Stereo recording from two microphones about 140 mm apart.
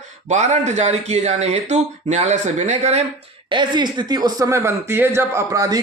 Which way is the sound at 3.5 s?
35° right (ahead or behind).